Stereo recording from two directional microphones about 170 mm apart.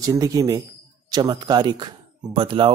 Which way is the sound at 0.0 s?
20° right (ahead or behind).